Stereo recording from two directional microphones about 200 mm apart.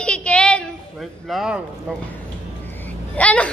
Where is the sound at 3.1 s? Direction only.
5° left (ahead or behind).